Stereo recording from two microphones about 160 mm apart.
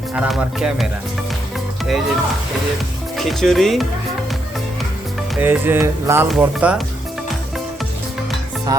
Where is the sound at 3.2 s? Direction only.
Centre (ahead or behind).